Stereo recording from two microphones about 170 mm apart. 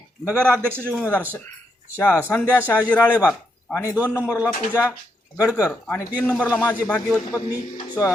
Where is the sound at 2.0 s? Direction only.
15° left (ahead or behind).